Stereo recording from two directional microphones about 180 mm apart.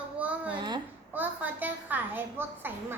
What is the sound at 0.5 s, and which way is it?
Speech, 25° right (ahead or behind).